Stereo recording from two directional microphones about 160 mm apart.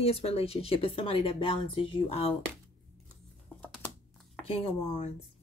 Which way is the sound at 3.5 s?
10° left (ahead or behind).